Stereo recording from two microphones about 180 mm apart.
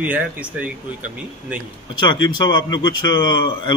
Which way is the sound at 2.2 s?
25° left (ahead or behind).